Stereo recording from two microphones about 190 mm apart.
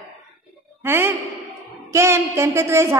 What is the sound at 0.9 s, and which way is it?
A woman's voice, 10° right (ahead or behind).